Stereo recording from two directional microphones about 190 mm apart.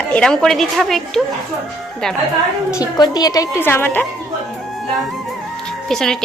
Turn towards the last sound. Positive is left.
turn(degrees=5)  # may be behind; listen again after turning